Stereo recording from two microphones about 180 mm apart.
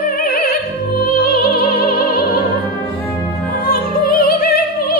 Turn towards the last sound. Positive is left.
turn(degrees=55)  # may be behind; listen again after turning